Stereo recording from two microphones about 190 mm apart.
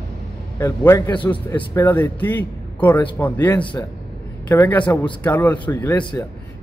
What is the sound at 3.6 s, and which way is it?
Speech, 25° left (ahead or behind).